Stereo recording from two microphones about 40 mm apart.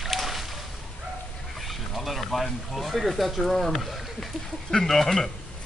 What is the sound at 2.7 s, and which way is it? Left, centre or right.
Speech, centre.